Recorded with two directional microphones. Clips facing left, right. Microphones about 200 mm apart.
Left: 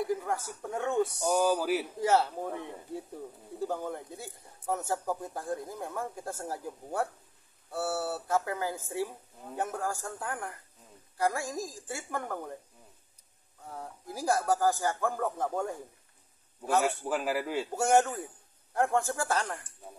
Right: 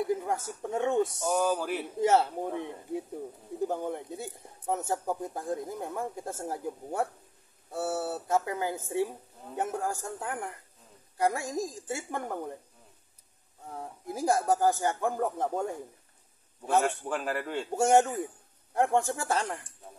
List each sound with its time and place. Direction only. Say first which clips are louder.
0.1 s speech: right 2 dB; 20° right (ahead or behind)
1.2 s a man's voice: left 1 dB; centre (ahead or behind)
2.0 s speech: right 5 dB; 20° right (ahead or behind)
13.7 s speech: right 4 dB; 20° right (ahead or behind)
16.8 s a man's voice: left 1 dB; 5° left (ahead or behind)
17.7 s speech: right 3 dB; 25° right (ahead or behind)